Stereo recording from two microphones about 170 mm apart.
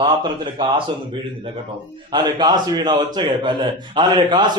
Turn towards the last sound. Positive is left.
turn(degrees=-25)  # may be behind; listen again after turning